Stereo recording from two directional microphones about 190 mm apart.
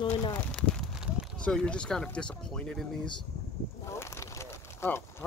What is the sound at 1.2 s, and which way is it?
Speech, 5° left (ahead or behind).